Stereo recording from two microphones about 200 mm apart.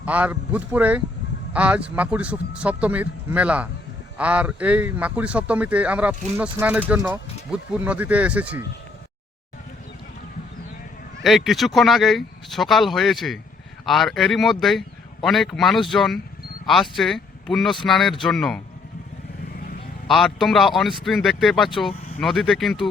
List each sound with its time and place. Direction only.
0.0 s speech: 10° right (ahead or behind)
11.2 s a man's voice: centre (ahead or behind)
19.5 s vehicle: 50° left (ahead or behind)
20.1 s a man's voice: centre (ahead or behind)